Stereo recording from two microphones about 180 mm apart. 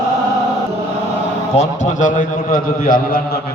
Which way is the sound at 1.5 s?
40° left (ahead or behind).